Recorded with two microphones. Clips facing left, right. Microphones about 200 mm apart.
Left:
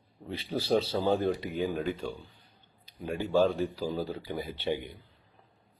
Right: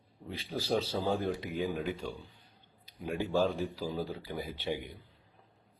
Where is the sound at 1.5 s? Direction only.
10° right (ahead or behind).